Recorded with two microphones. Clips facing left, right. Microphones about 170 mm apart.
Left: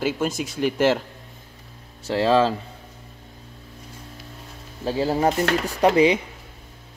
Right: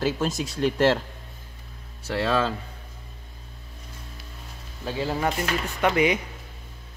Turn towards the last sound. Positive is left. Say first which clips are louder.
# left 5 dB
turn(degrees=30)  # may be behind; listen again after turning